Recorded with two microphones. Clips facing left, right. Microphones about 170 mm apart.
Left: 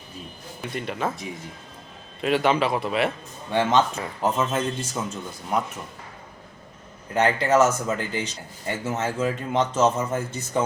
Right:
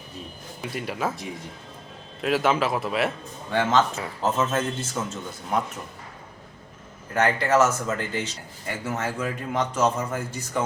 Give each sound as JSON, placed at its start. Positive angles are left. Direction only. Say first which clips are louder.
{"t": 0.6, "sound": "a man's voice", "louder": "even", "side_deg": -5}
{"t": 3.5, "sound": "a man's voice", "louder": "left 1 dB", "side_deg": 15}
{"t": 7.1, "sound": "speech", "louder": "left 1 dB", "side_deg": 20}